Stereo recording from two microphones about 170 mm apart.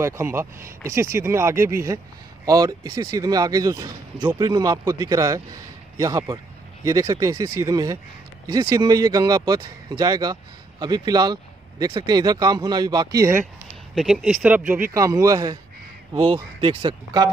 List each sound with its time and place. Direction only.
0.0 s a man's voice: 15° right (ahead or behind)
13.9 s speech: 5° right (ahead or behind)
15.0 s a man's voice: 20° right (ahead or behind)
16.1 s a man's voice: 30° right (ahead or behind)